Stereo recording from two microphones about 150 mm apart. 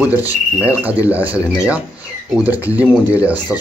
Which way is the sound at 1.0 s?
10° right (ahead or behind).